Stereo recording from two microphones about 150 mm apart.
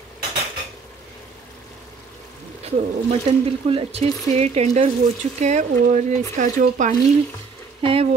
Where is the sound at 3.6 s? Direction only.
40° right (ahead or behind); by 6.9 s 60° right (ahead or behind).